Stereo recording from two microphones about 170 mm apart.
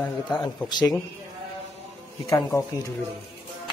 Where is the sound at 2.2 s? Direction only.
20° left (ahead or behind).